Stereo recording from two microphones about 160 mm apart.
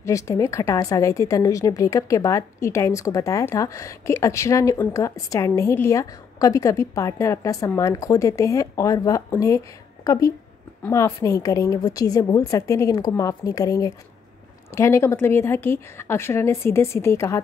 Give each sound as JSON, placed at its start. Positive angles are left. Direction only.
{"t": 0.0, "sound": "a woman's voice", "side_deg": 20}